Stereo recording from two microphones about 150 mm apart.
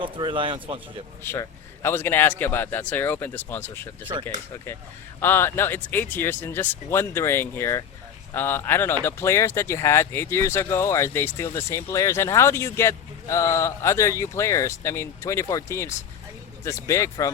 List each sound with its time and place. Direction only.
0.0 s speech: 35° right (ahead or behind)
1.2 s speech: 15° left (ahead or behind)
5.2 s speech: 15° left (ahead or behind)